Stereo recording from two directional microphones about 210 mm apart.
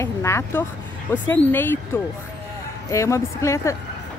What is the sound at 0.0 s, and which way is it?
Speech, 15° left (ahead or behind).